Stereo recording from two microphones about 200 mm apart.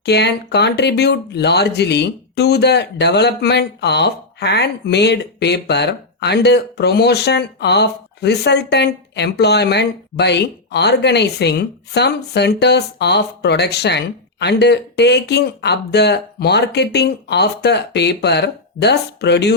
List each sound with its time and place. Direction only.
0.0 s speech: 55° left (ahead or behind)